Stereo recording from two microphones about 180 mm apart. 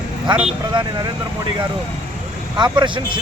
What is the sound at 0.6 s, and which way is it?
Speech, 25° right (ahead or behind).